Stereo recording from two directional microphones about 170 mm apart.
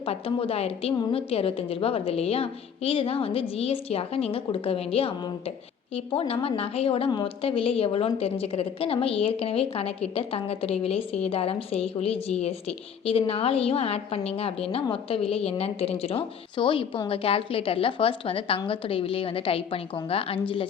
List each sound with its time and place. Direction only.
0.0 s a woman's voice: 35° left (ahead or behind)